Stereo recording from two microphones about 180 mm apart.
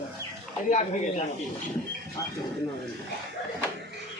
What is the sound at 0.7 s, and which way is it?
Speech, 40° left (ahead or behind).